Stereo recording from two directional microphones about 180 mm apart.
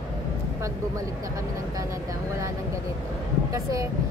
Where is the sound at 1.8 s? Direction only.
15° right (ahead or behind).